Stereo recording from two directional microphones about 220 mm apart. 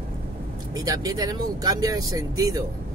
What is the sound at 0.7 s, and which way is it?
Speech, 15° right (ahead or behind).